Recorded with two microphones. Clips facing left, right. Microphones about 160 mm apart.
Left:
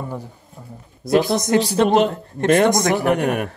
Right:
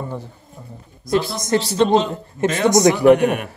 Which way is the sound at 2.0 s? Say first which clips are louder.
Left 3 dB; 60° left (ahead or behind).